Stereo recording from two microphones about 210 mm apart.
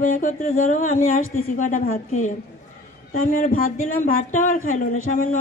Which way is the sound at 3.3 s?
35° left (ahead or behind).